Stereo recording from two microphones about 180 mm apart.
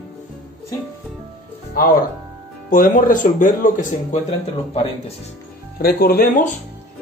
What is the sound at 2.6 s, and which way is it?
Speech, 50° left (ahead or behind).